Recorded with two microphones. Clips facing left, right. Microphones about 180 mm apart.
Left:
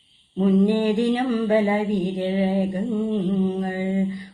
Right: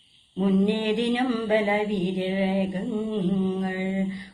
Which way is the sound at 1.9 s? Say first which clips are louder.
Left 3 dB; 45° left (ahead or behind).